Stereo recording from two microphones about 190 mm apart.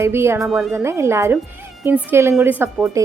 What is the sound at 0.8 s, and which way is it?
Speech, 15° right (ahead or behind).